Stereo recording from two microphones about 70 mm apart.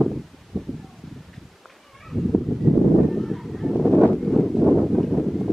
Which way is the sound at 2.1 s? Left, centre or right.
Centre.